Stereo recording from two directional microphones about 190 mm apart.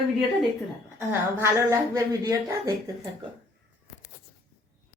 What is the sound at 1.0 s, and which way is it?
A woman's voice, 15° right (ahead or behind).